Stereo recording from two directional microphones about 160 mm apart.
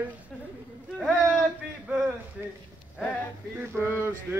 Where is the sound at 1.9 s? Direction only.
5° right (ahead or behind).